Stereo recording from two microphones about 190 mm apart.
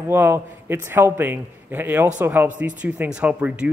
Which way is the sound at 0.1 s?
10° right (ahead or behind).